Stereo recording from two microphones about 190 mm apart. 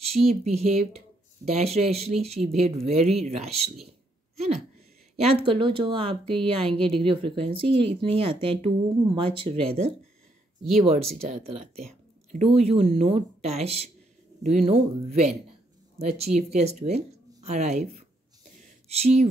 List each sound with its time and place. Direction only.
0.1 s speech: 35° right (ahead or behind)
5.1 s speech: 30° right (ahead or behind)